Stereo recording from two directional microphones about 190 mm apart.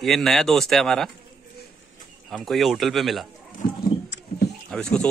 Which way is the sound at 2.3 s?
Centre (ahead or behind).